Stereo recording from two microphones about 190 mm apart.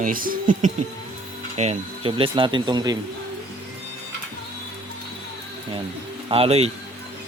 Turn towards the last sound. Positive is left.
turn(degrees=-30)  # may be behind; listen again after turning